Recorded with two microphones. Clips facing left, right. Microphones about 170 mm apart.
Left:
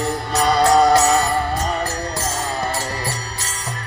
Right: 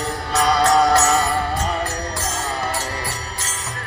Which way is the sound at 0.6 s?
20° left (ahead or behind).